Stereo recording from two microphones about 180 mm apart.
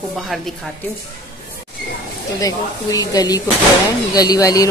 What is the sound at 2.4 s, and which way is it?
Speech, 20° left (ahead or behind).